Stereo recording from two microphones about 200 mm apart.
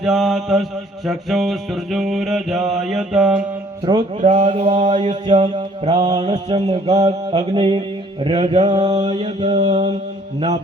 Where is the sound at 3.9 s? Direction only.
20° right (ahead or behind).